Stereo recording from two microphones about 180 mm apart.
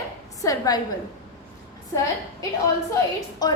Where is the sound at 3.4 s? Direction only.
20° left (ahead or behind).